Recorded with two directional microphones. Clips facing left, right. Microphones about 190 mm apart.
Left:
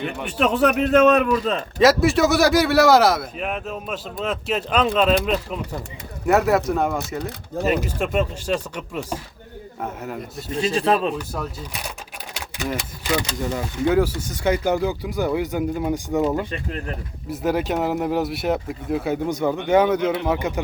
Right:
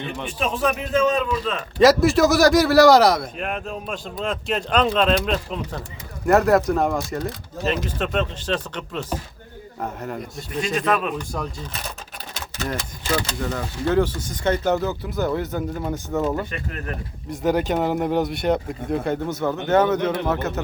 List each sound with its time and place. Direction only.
0.3 s a man's voice: 65° left (ahead or behind)
1.8 s a man's voice: centre (ahead or behind)
10.6 s speech: 30° left (ahead or behind)
11.2 s speech: 10° left (ahead or behind)
16.5 s speech: 30° left (ahead or behind)
17.2 s a man's voice: 5° left (ahead or behind)